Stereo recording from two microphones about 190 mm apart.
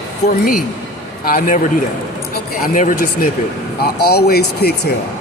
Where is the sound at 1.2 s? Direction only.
45° left (ahead or behind).